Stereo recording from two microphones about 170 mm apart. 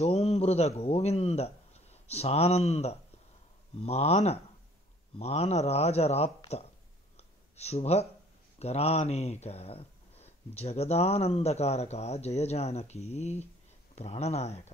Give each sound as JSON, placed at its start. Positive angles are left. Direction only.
{"t": 0.0, "sound": "a man's voice", "side_deg": 40}
{"t": 7.2, "sound": "a sound", "side_deg": 40}
{"t": 8.5, "sound": "speech", "side_deg": 40}